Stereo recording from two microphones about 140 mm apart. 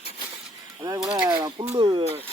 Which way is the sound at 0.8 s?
25° right (ahead or behind).